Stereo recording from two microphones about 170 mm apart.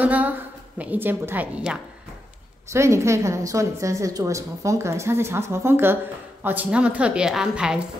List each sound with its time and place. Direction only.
0.0 s a woman's voice: 10° right (ahead or behind)